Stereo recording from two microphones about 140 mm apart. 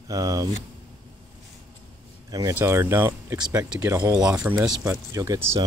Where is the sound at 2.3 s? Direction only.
25° right (ahead or behind).